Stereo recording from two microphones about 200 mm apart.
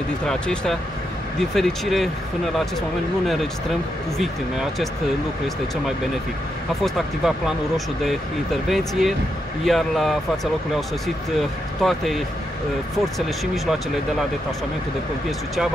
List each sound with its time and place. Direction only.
0.3 s speech: 5° left (ahead or behind)
4.2 s speech: centre (ahead or behind)
6.8 s speech: centre (ahead or behind)